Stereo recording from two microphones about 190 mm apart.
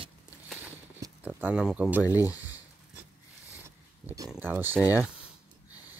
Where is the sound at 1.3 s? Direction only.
5° right (ahead or behind).